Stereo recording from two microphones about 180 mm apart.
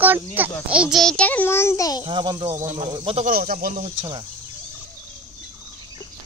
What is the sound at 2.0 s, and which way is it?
A child's voice, 30° right (ahead or behind).